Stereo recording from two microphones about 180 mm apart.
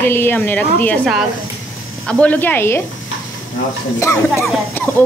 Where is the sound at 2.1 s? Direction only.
5° left (ahead or behind).